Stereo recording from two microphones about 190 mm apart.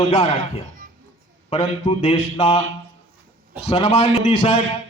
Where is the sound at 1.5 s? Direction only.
30° left (ahead or behind).